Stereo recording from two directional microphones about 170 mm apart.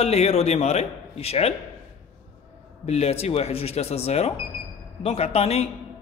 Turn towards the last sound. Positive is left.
turn(degrees=40)  # may be behind; listen again after turning